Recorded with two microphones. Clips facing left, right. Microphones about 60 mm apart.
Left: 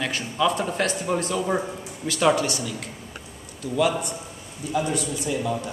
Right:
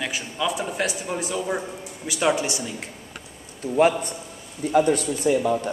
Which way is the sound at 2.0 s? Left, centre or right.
Centre.